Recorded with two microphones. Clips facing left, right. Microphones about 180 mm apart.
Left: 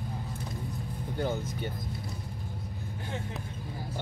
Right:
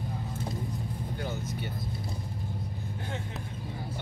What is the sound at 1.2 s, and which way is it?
Speech, 50° left (ahead or behind).